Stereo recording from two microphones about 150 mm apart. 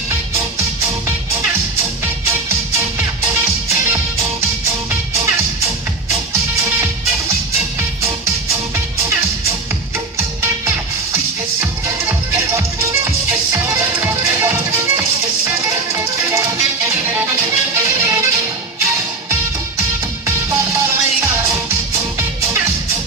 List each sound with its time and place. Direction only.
2.2 s music: 15° right (ahead or behind)
10.1 s music: 20° right (ahead or behind)
16.2 s music: 20° right (ahead or behind)
20.2 s music: 20° right (ahead or behind)